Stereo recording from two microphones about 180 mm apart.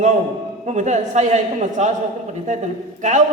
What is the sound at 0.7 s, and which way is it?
A man's voice, 40° right (ahead or behind).